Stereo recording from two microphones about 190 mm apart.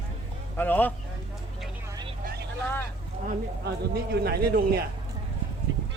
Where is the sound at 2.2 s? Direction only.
55° right (ahead or behind).